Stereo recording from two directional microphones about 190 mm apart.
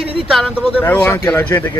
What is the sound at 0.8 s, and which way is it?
Speech, 10° left (ahead or behind).